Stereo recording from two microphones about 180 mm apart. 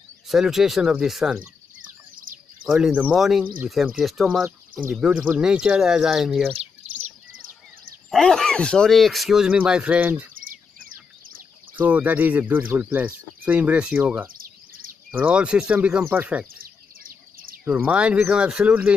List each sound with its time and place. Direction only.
0.3 s speech: centre (ahead or behind)
2.3 s bird: 50° right (ahead or behind)
2.6 s speech: 5° right (ahead or behind)
6.5 s bird: 40° right (ahead or behind)
8.1 s speech: 5° left (ahead or behind)
10.3 s a sound: 50° right (ahead or behind)
11.7 s speech: 10° right (ahead or behind)
14.3 s bird: 50° right (ahead or behind)
15.1 s speech: 5° right (ahead or behind)
16.6 s bird: 55° right (ahead or behind)
17.6 s speech: 10° right (ahead or behind)